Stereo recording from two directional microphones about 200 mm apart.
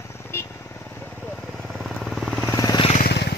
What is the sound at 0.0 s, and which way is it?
Vehicle, 10° left (ahead or behind).